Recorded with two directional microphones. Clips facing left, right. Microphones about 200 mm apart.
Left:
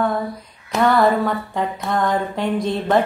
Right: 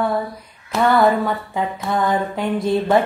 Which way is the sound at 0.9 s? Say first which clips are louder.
Even; centre (ahead or behind).